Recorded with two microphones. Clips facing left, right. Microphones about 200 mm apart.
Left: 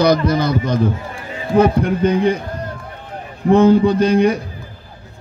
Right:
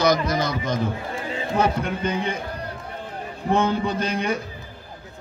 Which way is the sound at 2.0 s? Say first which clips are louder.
Left 12 dB; 35° left (ahead or behind).